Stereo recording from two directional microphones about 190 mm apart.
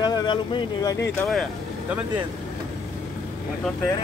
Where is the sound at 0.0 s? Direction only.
20° left (ahead or behind).